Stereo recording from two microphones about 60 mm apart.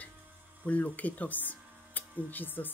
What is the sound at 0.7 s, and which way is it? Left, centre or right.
Speech, left.